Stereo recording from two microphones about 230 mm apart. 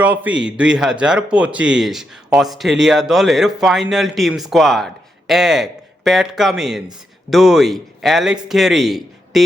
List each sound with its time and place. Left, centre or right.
0.0 s a man's voice: centre